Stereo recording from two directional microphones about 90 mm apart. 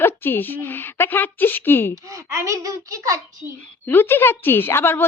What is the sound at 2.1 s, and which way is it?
A child's voice, 35° right (ahead or behind).